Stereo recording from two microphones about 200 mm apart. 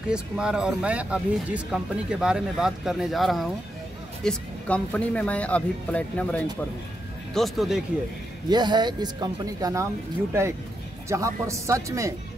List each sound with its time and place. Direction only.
0.1 s speech: 5° right (ahead or behind)
8.5 s speech: 20° right (ahead or behind)
11.1 s speech: 15° right (ahead or behind)